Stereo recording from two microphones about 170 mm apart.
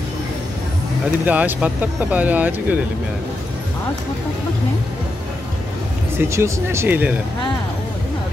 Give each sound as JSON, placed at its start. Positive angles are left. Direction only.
{"t": 1.2, "sound": "speech", "side_deg": -10}
{"t": 6.1, "sound": "speech", "side_deg": -15}